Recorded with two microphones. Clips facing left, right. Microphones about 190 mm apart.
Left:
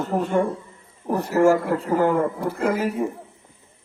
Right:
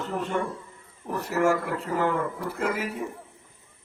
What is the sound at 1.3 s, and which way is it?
A man's voice, 30° left (ahead or behind).